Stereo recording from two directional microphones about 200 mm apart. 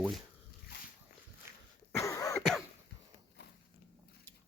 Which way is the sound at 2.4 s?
Centre (ahead or behind).